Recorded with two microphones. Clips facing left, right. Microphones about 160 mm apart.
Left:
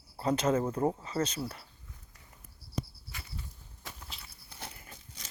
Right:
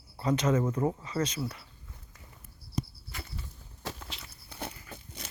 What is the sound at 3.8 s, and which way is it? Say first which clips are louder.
Walk: right 7 dB; 90° right.